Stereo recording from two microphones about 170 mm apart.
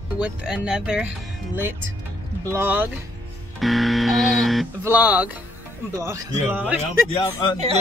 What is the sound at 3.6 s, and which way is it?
Speech, centre (ahead or behind).